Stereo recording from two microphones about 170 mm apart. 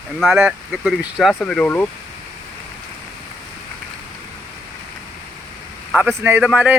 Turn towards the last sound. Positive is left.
turn(degrees=-5)  # may be behind; listen again after turning